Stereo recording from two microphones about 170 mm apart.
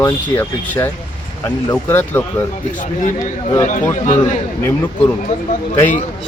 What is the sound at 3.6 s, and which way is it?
Speech, 50° left (ahead or behind).